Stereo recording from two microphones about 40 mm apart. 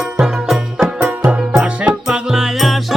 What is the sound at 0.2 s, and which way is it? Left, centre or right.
Music, centre.